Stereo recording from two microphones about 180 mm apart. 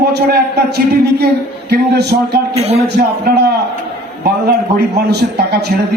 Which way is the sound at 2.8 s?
65° right (ahead or behind).